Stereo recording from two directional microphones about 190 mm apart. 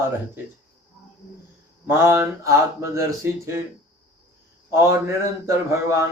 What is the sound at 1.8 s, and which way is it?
Speech, 15° right (ahead or behind).